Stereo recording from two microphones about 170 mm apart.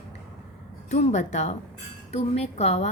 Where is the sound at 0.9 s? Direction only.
45° left (ahead or behind).